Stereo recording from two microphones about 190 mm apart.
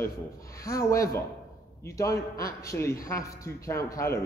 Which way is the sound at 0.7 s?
15° left (ahead or behind).